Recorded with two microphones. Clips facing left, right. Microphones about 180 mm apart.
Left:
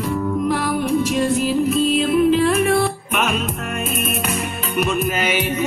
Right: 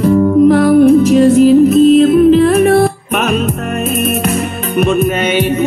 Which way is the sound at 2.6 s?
60° right (ahead or behind).